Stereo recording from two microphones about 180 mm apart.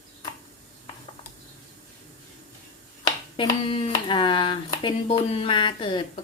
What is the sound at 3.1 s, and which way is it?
Speech, 25° left (ahead or behind).